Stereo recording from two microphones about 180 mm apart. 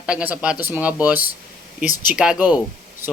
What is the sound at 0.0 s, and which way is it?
Speech, 5° right (ahead or behind).